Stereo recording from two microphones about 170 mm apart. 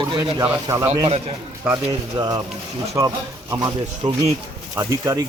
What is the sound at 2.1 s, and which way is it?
Speech, 25° right (ahead or behind).